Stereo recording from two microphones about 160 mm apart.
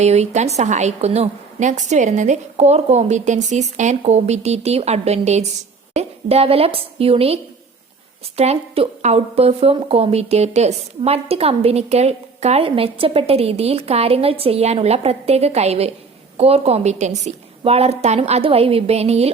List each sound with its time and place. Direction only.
0.0 s a woman's voice: 45° right (ahead or behind)
8.4 s a woman's voice: 40° right (ahead or behind)